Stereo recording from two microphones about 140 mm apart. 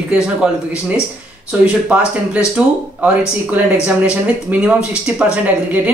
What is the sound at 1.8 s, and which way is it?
Speech, 10° right (ahead or behind).